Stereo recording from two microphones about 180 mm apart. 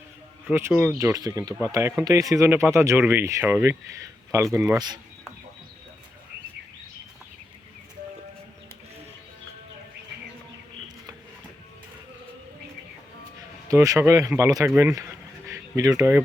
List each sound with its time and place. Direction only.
0.4 s speech: 10° right (ahead or behind)
13.7 s speech: 20° right (ahead or behind)
15.4 s a sound: 20° right (ahead or behind)